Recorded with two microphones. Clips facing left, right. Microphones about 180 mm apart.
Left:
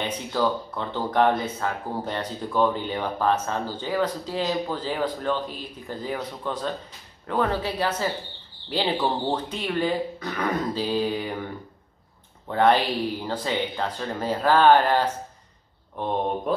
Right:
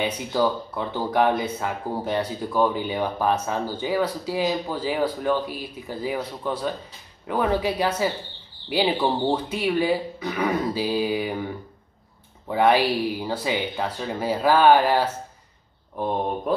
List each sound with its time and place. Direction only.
0.3 s speech: 10° right (ahead or behind)
12.4 s speech: 10° right (ahead or behind)